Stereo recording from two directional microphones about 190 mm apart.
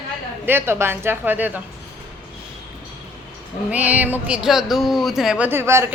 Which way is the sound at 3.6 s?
5° right (ahead or behind).